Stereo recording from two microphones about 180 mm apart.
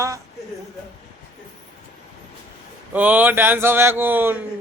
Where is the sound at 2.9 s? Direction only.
10° right (ahead or behind).